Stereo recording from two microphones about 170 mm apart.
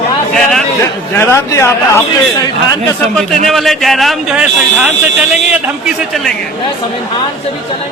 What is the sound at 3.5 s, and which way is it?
Speech, centre (ahead or behind).